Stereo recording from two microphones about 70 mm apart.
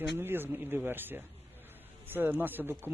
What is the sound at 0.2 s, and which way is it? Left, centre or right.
Speech, right.